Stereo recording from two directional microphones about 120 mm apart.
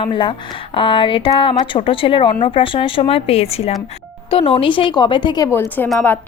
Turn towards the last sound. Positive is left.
turn(degrees=15)  # may be behind; listen again after turning